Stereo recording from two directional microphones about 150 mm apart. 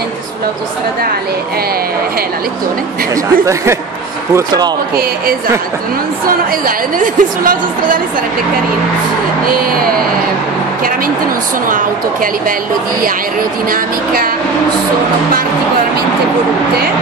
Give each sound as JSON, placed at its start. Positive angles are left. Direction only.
{"t": 4.3, "sound": "speech", "side_deg": -20}
{"t": 7.0, "sound": "a woman's voice", "side_deg": -65}